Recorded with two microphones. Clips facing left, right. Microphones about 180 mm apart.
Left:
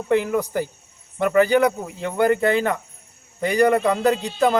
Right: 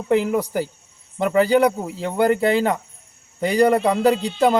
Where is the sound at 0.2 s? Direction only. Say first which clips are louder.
Right 1 dB; 30° right (ahead or behind).